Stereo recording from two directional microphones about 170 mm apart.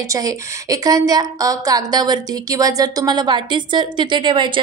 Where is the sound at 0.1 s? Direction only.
20° right (ahead or behind).